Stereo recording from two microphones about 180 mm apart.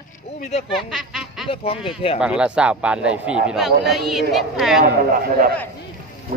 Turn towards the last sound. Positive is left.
turn(degrees=-50)  # may be behind; listen again after turning